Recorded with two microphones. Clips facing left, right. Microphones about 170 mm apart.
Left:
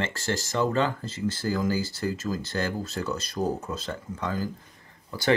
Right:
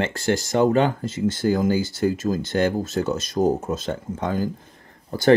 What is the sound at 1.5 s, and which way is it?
Speech, 60° right (ahead or behind).